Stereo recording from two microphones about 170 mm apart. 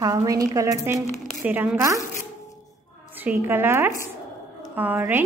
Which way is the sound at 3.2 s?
10° right (ahead or behind).